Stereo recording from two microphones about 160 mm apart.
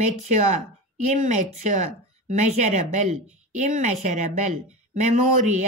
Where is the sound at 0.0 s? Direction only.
45° right (ahead or behind).